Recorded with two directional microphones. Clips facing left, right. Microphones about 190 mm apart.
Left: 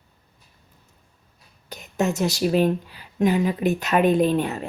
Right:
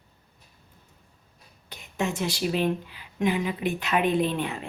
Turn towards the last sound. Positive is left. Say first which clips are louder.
# left 5 dB
turn(degrees=40)  # may be behind; listen again after turning